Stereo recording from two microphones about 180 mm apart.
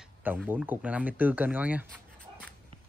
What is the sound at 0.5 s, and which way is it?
Speech, 10° right (ahead or behind).